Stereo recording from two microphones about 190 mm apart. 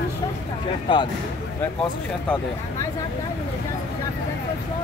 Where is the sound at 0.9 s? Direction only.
25° left (ahead or behind).